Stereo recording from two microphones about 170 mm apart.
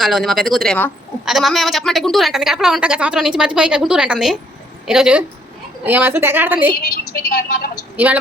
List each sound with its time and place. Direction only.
0.0 s a woman's voice: centre (ahead or behind)
7.1 s a woman's voice: 60° left (ahead or behind)
7.9 s a woman's voice: 10° right (ahead or behind)